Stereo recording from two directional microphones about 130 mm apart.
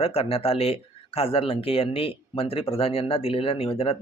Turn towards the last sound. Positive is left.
turn(degrees=50)  # may be behind; listen again after turning